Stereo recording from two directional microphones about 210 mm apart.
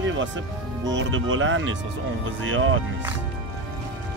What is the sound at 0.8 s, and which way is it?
Speech, 65° right (ahead or behind).